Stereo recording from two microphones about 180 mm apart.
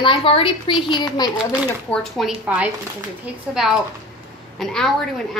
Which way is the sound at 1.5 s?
Centre (ahead or behind).